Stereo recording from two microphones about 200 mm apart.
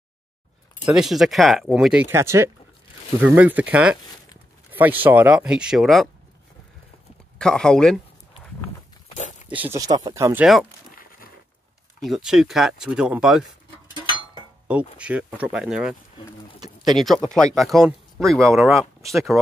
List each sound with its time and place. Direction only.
0.8 s speech: centre (ahead or behind)
7.3 s speech: 5° left (ahead or behind)
9.6 s speech: 15° right (ahead or behind)
10.4 s speech: 5° right (ahead or behind)
12.0 s speech: centre (ahead or behind)
14.7 s speech: 5° right (ahead or behind)